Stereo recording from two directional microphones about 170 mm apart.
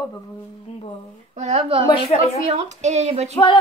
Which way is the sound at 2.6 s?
40° right (ahead or behind).